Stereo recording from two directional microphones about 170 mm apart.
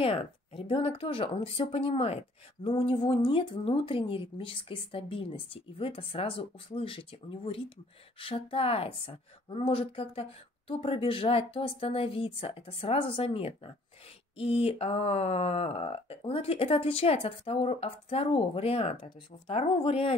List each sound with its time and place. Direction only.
0.0 s speech: 35° left (ahead or behind)